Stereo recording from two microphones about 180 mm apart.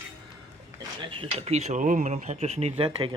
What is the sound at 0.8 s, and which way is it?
Speech, 30° right (ahead or behind).